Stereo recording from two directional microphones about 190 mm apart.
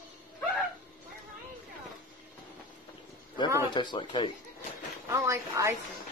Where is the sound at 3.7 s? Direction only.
25° left (ahead or behind).